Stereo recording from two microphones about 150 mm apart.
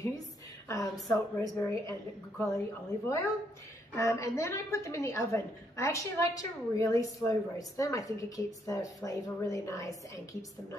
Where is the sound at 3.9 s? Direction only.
20° left (ahead or behind).